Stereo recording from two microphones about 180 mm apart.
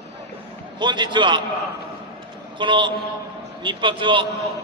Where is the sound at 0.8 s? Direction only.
25° right (ahead or behind).